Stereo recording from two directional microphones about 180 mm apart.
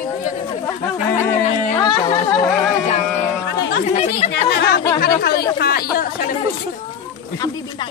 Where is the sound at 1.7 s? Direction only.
20° left (ahead or behind).